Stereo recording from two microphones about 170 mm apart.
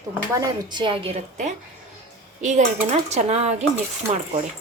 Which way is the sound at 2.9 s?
40° right (ahead or behind).